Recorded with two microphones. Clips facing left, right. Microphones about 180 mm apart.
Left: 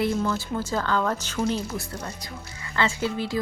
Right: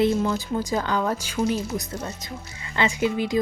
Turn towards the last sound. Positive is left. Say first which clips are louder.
# right 4 dB
turn(degrees=-15)  # may be behind; listen again after turning